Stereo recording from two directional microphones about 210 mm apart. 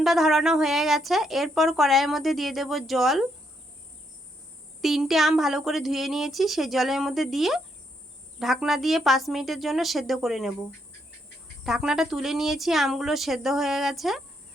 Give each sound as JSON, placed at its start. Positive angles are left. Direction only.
{"t": 0.0, "sound": "a woman's voice", "side_deg": 0}
{"t": 4.8, "sound": "a woman's voice", "side_deg": 0}
{"t": 11.6, "sound": "a woman's voice", "side_deg": 0}